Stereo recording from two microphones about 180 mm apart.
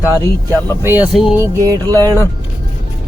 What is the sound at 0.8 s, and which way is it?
Speech, 15° right (ahead or behind).